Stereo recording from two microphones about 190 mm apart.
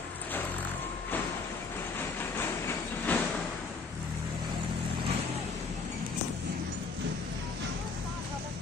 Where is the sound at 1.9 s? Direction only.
10° left (ahead or behind).